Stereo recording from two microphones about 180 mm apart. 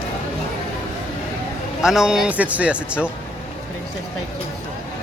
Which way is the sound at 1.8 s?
5° right (ahead or behind).